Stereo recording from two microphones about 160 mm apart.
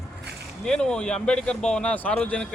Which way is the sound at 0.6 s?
5° left (ahead or behind).